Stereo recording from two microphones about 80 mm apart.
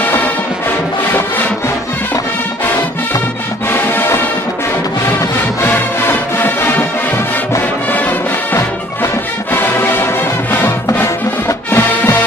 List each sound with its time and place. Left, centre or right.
0.0 s music: left
3.7 s music: left
5.6 s music: left
9.5 s music: left
11.4 s music: left